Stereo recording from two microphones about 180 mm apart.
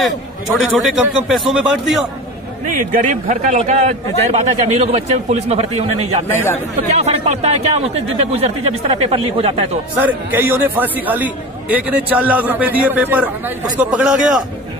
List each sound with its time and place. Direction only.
0.7 s a man's voice: 5° right (ahead or behind)
2.6 s a man's voice: 45° right (ahead or behind)
6.2 s speech: 15° left (ahead or behind)
6.9 s a man's voice: 35° right (ahead or behind)
9.9 s a man's voice: 10° right (ahead or behind)